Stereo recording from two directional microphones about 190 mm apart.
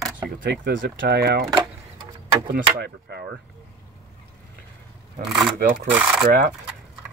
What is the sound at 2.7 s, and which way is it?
Speech, 60° right (ahead or behind).